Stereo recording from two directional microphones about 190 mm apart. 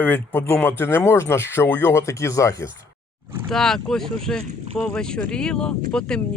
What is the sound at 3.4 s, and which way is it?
Speech, centre (ahead or behind).